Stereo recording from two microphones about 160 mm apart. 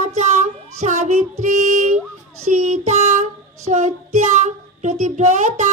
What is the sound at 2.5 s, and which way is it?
Child singing, 50° right (ahead or behind).